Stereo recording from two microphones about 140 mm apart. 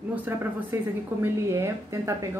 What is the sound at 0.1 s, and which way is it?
Speech, 15° right (ahead or behind).